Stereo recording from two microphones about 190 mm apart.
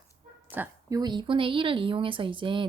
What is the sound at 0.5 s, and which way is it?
A woman's voice, 15° right (ahead or behind).